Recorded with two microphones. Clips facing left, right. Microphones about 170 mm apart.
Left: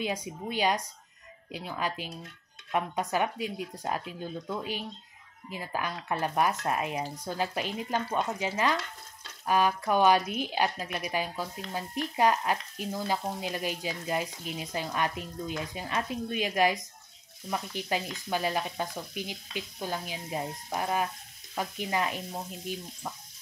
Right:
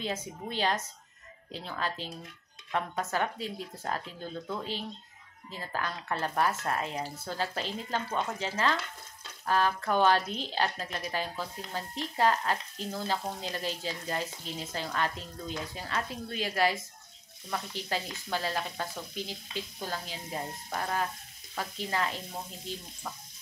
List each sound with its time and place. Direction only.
0.0 s speech: 10° left (ahead or behind)
22.3 s frying: 5° left (ahead or behind)